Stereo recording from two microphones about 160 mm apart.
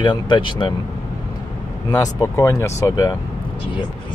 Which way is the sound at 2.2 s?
20° left (ahead or behind).